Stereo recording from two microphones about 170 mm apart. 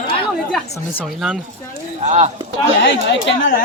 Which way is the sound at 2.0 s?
40° right (ahead or behind).